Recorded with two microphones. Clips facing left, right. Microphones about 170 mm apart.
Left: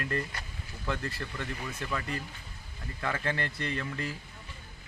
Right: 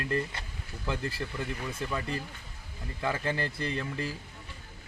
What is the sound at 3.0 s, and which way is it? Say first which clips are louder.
Speech: right 2 dB; 30° right (ahead or behind).